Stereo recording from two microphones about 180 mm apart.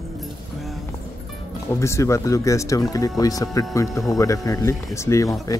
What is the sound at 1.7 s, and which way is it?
Speech, 15° left (ahead or behind).